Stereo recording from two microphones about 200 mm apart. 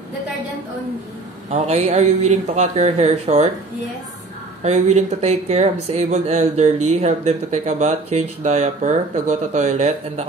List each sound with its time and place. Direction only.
1.5 s speech: 35° right (ahead or behind)
4.6 s speech: 35° right (ahead or behind)